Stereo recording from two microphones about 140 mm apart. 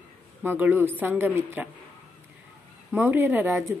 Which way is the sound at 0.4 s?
10° right (ahead or behind).